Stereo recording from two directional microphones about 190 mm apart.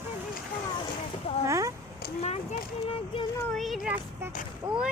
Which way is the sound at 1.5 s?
15° right (ahead or behind).